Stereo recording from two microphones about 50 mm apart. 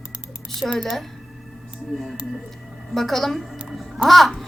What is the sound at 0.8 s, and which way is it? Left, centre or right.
A woman's voice, centre.